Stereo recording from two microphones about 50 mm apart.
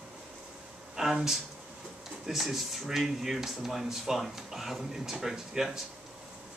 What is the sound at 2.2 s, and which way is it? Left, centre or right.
Speech, centre.